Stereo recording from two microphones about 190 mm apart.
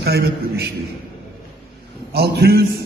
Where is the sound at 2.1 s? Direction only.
55° right (ahead or behind).